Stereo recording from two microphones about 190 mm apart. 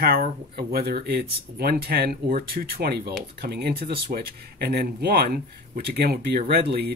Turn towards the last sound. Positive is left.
turn(degrees=-55)  # may be behind; listen again after turning